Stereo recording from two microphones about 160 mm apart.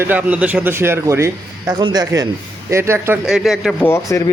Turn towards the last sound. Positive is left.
turn(degrees=20)  # may be behind; listen again after turning